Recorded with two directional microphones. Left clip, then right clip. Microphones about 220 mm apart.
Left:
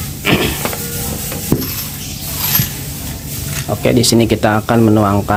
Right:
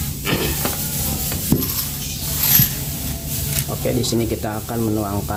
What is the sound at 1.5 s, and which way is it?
Stir, centre (ahead or behind).